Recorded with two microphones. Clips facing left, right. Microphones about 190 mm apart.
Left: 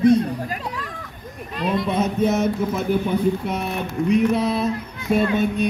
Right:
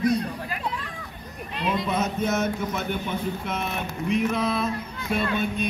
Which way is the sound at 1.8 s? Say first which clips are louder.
Left 5 dB; 30° left (ahead or behind).